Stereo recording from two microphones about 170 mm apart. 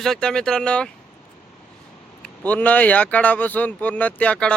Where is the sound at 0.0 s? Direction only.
5° left (ahead or behind).